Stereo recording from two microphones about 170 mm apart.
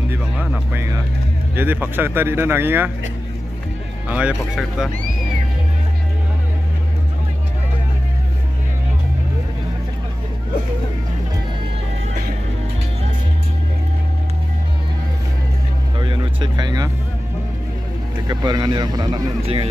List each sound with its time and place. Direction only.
0.1 s speech: 10° right (ahead or behind)
4.1 s speech: 5° right (ahead or behind)
16.0 s vehicle: 25° right (ahead or behind)
18.2 s speech: 25° right (ahead or behind)